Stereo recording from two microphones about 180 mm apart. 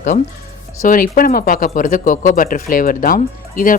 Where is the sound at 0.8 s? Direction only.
50° left (ahead or behind).